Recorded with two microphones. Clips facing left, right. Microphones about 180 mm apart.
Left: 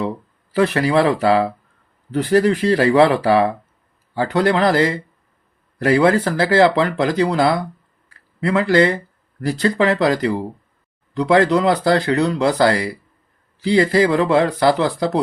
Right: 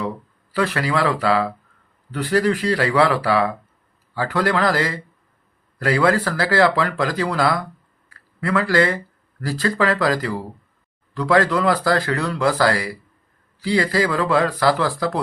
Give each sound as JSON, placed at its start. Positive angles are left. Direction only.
{"t": 0.5, "sound": "speech", "side_deg": 25}